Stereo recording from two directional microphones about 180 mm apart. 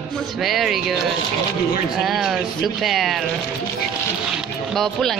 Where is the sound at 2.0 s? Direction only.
Centre (ahead or behind).